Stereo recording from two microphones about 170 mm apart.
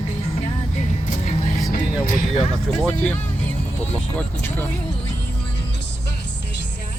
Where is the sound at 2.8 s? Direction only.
10° left (ahead or behind).